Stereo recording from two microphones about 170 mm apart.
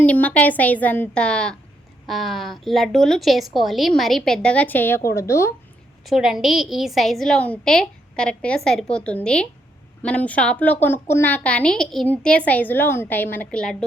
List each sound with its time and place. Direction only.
0.0 s a woman's voice: 10° left (ahead or behind)
6.1 s a woman's voice: centre (ahead or behind)